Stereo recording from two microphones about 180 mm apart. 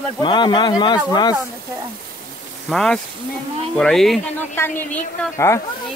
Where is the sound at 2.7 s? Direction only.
Centre (ahead or behind).